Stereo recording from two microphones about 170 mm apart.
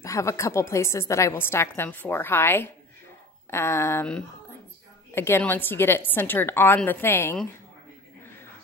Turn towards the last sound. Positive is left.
turn(degrees=15)  # may be behind; listen again after turning